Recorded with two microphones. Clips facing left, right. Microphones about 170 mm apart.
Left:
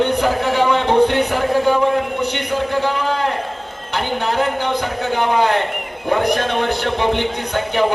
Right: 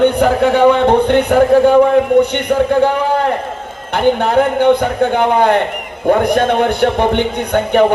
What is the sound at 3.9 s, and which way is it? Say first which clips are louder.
Speech: right 8 dB; 55° right (ahead or behind).